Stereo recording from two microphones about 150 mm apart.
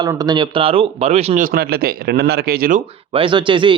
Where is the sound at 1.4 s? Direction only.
85° right.